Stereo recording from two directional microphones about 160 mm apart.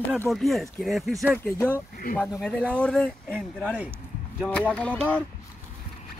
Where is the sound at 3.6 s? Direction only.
10° right (ahead or behind).